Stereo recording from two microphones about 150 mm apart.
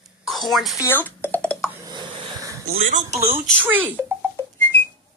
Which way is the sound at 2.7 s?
55° right (ahead or behind).